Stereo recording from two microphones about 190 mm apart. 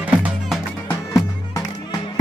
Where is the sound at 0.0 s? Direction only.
5° right (ahead or behind).